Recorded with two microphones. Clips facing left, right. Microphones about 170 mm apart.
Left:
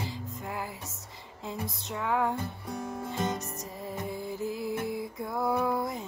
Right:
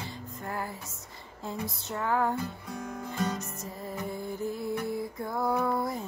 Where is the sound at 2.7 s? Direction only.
30° left (ahead or behind).